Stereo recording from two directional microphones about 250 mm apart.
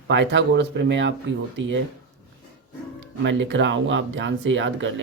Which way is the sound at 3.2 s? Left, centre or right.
Right.